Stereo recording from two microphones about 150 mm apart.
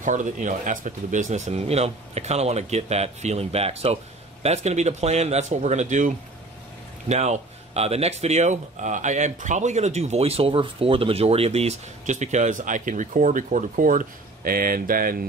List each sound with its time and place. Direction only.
0.0 s speech: 55° right (ahead or behind); by 15.2 s 70° right (ahead or behind)